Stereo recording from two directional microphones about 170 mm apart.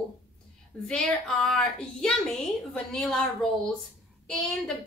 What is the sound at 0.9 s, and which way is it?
A woman's voice, centre (ahead or behind).